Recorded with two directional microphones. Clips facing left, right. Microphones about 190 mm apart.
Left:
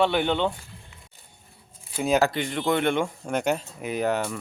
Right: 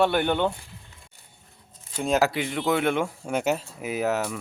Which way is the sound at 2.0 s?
Centre (ahead or behind).